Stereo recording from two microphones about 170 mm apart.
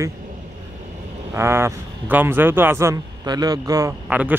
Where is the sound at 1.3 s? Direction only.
15° right (ahead or behind).